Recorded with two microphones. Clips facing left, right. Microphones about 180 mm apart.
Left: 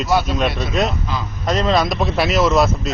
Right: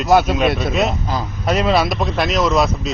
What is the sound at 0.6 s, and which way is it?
A man's voice, centre (ahead or behind).